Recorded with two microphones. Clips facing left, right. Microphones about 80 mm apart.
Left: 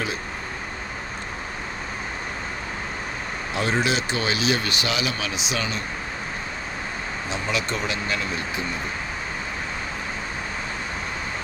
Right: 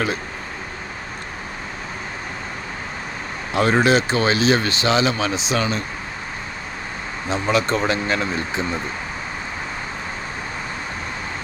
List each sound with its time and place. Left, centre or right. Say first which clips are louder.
3.5 s speech: right 7 dB; right
7.3 s speech: right 8 dB; right